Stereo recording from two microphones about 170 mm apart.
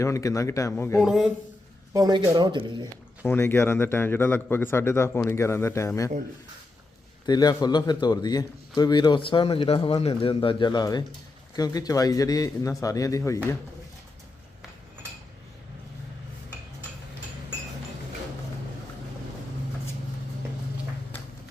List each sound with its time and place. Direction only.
0.0 s a man's voice: 20° left (ahead or behind)
0.9 s speech: centre (ahead or behind)
1.9 s speech: 25° right (ahead or behind)
3.2 s a man's voice: 15° left (ahead or behind)
7.3 s a man's voice: 25° left (ahead or behind)